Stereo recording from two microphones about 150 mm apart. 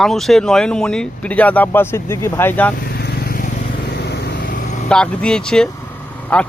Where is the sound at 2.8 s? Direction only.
90° left; by 4.9 s 55° left (ahead or behind).